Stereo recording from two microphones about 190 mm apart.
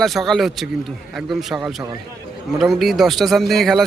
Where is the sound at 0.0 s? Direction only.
Centre (ahead or behind).